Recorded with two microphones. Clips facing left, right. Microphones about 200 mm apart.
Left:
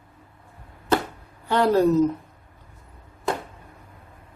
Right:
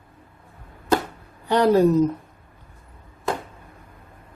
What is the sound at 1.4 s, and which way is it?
Speech, 15° right (ahead or behind).